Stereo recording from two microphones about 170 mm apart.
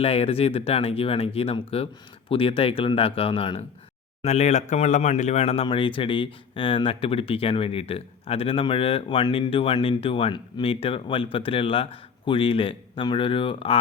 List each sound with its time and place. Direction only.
0.0 s speech: 35° left (ahead or behind)